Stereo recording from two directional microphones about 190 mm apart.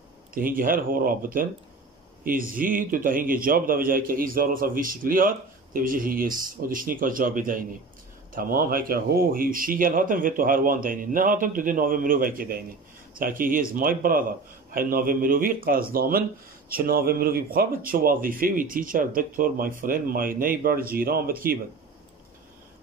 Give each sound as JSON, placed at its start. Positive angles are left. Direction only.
{"t": 0.3, "sound": "speech", "side_deg": -45}